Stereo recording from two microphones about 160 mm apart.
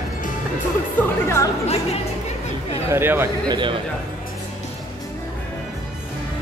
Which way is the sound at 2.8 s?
15° right (ahead or behind).